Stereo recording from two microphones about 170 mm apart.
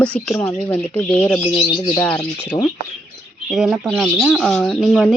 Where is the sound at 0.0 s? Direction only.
5° left (ahead or behind).